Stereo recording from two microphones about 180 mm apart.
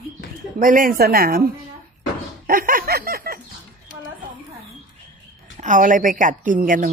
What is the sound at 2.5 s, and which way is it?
Snicker, 50° right (ahead or behind).